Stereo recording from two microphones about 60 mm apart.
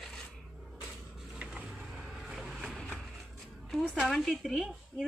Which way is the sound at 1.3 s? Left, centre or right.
Centre.